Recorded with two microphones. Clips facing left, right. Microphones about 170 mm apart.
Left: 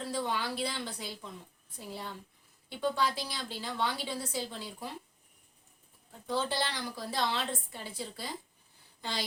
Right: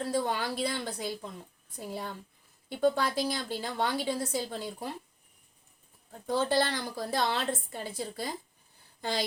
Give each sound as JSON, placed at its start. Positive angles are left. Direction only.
{"t": 0.1, "sound": "a woman's voice", "side_deg": -50}
{"t": 6.2, "sound": "a woman's voice", "side_deg": -50}
{"t": 9.0, "sound": "a sound", "side_deg": -45}